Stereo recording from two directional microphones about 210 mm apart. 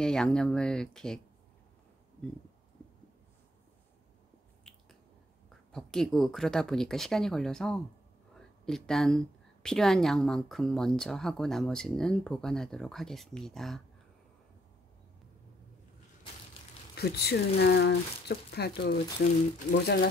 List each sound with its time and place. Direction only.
0.0 s speech: 5° left (ahead or behind)
5.7 s speech: 5° left (ahead or behind)
16.9 s speech: 50° left (ahead or behind)